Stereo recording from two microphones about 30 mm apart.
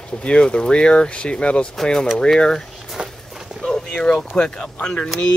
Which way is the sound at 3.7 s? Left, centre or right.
Left.